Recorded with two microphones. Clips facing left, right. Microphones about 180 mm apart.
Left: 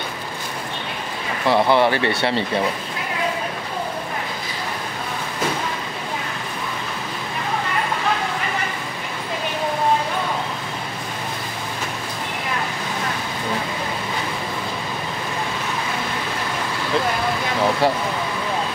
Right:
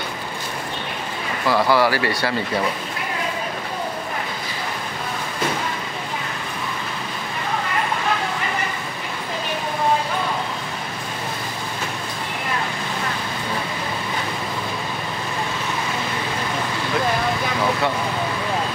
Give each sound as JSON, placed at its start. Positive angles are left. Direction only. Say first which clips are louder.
{"t": 1.4, "sound": "speech", "louder": "left 1 dB", "side_deg": 25}